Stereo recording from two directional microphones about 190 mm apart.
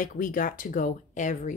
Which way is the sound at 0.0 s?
45° left (ahead or behind).